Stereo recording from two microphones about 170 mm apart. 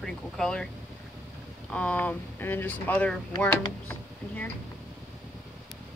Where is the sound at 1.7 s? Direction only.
10° left (ahead or behind).